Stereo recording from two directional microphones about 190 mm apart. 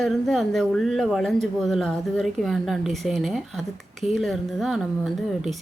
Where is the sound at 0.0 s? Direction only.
Centre (ahead or behind).